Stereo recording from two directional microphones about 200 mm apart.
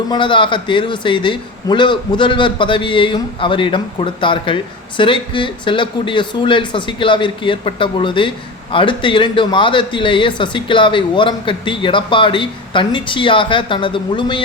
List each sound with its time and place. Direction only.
0.1 s a man's voice: 25° left (ahead or behind)